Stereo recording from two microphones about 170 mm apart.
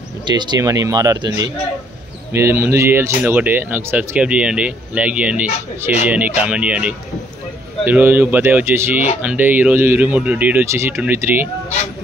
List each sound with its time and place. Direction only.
0.2 s speech: 25° right (ahead or behind)